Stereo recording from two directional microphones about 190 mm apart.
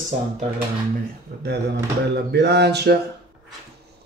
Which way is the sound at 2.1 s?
60° right (ahead or behind).